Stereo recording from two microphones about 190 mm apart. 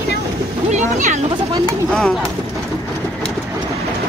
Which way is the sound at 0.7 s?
40° right (ahead or behind).